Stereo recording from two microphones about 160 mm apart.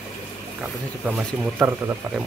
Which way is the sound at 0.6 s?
10° right (ahead or behind).